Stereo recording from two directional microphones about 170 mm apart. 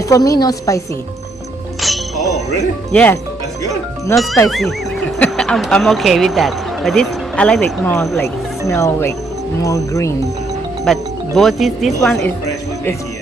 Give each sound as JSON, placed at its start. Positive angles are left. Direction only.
{"t": 0.0, "sound": "a woman's voice", "side_deg": 20}
{"t": 1.8, "sound": "music", "side_deg": 0}
{"t": 2.9, "sound": "speech", "side_deg": 10}
{"t": 4.4, "sound": "speech", "side_deg": 0}
{"t": 8.6, "sound": "a woman's voice", "side_deg": 15}
{"t": 11.3, "sound": "speech", "side_deg": 0}